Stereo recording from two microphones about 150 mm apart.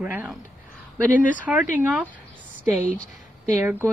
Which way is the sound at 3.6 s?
15° right (ahead or behind).